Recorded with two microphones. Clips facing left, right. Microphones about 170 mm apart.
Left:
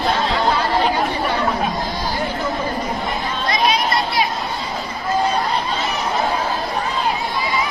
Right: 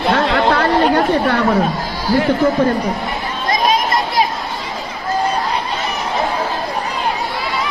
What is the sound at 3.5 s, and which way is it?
Chatter, 45° right (ahead or behind).